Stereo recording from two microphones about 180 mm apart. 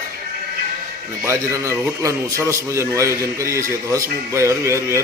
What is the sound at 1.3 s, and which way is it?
A man's voice, 15° right (ahead or behind).